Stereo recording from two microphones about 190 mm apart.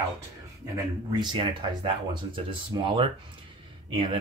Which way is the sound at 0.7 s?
20° right (ahead or behind).